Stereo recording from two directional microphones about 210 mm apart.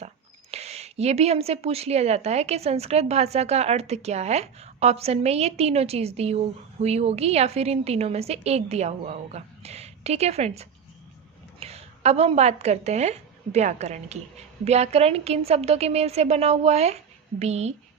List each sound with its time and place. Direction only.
0.5 s a woman's voice: 30° right (ahead or behind)